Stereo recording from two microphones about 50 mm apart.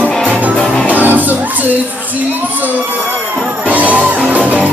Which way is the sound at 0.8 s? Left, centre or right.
Right.